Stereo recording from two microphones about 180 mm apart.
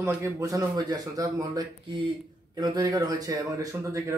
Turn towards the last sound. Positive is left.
turn(degrees=-15)  # may be behind; listen again after turning